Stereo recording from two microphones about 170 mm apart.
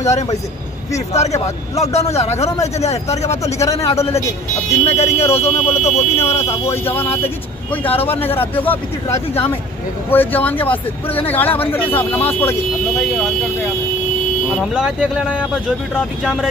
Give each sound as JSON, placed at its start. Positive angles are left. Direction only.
{"t": 1.1, "sound": "speech", "side_deg": 40}
{"t": 6.7, "sound": "speech", "side_deg": 10}
{"t": 14.5, "sound": "speech", "side_deg": -5}